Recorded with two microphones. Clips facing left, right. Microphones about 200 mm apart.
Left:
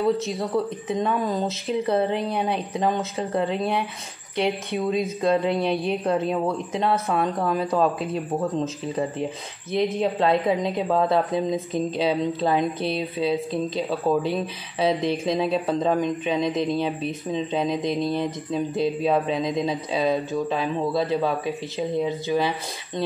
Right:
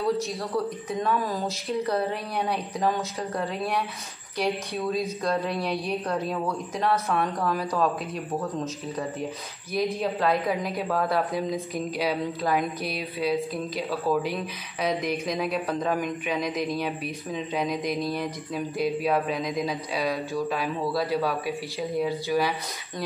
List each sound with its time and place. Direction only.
0.3 s speech: 25° left (ahead or behind)